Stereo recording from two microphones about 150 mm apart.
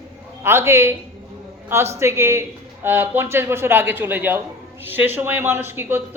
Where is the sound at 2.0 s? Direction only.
15° right (ahead or behind).